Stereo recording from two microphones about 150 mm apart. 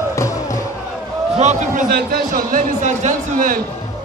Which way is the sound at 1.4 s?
55° right (ahead or behind).